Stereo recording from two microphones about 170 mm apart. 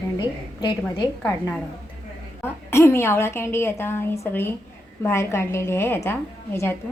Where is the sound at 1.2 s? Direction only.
10° left (ahead or behind).